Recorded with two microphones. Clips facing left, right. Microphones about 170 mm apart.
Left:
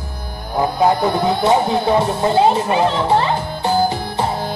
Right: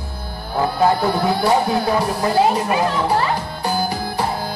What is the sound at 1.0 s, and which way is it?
Speech, 20° left (ahead or behind).